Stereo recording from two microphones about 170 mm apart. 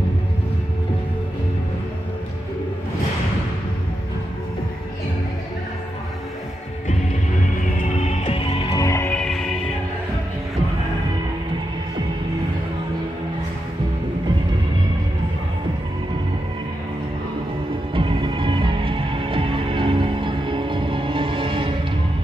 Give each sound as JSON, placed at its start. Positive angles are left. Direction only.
{"t": 7.5, "sound": "music", "side_deg": 45}
{"t": 8.7, "sound": "music", "side_deg": 15}
{"t": 17.9, "sound": "music", "side_deg": -30}